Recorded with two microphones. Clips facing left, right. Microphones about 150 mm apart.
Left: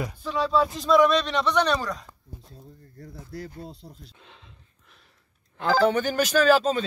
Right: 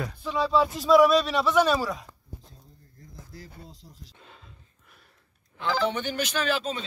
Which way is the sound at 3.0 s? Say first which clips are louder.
Left 8 dB; 65° left (ahead or behind).